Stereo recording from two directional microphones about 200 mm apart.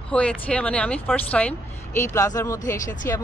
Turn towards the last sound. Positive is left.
turn(degrees=15)  # may be behind; listen again after turning